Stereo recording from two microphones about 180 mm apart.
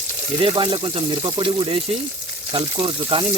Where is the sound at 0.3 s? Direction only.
25° right (ahead or behind).